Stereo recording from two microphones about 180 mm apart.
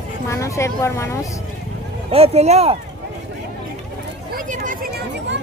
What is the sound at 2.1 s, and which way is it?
Speech, 35° right (ahead or behind).